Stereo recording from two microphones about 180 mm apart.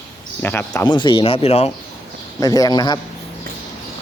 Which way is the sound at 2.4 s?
20° left (ahead or behind).